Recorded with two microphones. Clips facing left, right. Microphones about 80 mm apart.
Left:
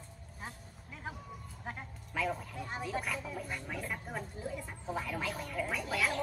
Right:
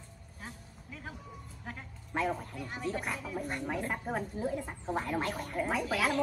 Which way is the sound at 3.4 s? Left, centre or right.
Right.